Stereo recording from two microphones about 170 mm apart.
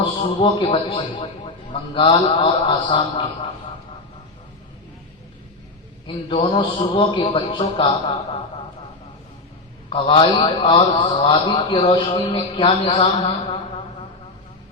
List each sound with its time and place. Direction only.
0.0 s a man's voice: 30° left (ahead or behind)
6.1 s a man's voice: 30° left (ahead or behind)
9.9 s a man's voice: 30° left (ahead or behind)